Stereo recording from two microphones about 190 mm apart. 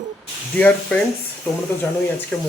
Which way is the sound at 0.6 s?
5° left (ahead or behind).